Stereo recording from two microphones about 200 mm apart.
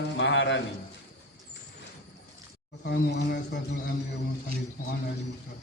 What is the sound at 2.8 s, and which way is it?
Speech, 60° left (ahead or behind).